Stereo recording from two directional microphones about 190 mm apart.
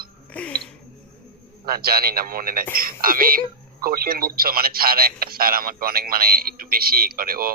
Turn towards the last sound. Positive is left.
turn(degrees=-50)  # may be behind; listen again after turning